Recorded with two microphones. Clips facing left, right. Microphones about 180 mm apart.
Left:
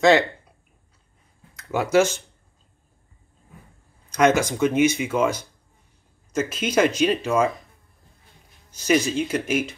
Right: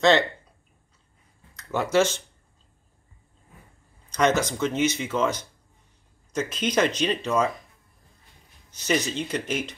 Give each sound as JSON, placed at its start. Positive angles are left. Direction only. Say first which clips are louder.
{"t": 1.6, "sound": "speech", "louder": "left 3 dB", "side_deg": 10}
{"t": 4.1, "sound": "speech", "louder": "left 4 dB", "side_deg": 10}
{"t": 8.7, "sound": "speech", "louder": "left 5 dB", "side_deg": 10}